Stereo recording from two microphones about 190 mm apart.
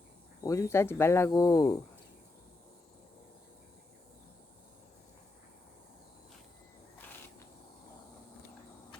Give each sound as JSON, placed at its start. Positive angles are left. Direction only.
{"t": 0.4, "sound": "speech", "side_deg": 15}